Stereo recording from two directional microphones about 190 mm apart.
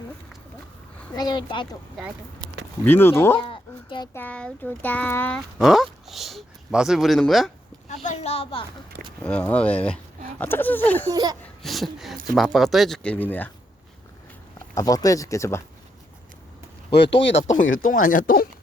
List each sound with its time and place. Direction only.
1.1 s speech: 20° left (ahead or behind)
2.8 s speech: 10° left (ahead or behind)
3.3 s a sound: 25° left (ahead or behind)
4.1 s speech: 10° left (ahead or behind)
8.0 s a sound: 35° left (ahead or behind)
9.2 s speech: 5° left (ahead or behind)
11.1 s speech: 20° right (ahead or behind)
11.6 s speech: centre (ahead or behind)
14.8 s speech: 20° left (ahead or behind)
16.9 s speech: 65° left (ahead or behind)
18.1 s speech: 45° left (ahead or behind)